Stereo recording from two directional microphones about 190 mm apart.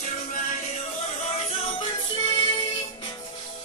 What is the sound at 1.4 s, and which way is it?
Music, 35° left (ahead or behind).